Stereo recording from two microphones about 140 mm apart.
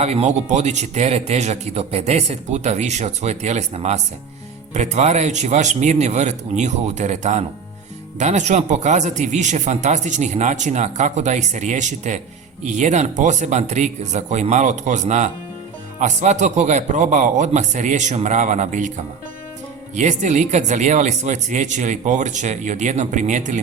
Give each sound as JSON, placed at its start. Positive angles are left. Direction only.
{"t": 0.0, "sound": "speech", "side_deg": -50}